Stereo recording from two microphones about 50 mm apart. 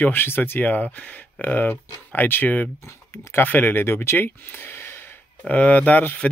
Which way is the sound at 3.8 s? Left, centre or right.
Left.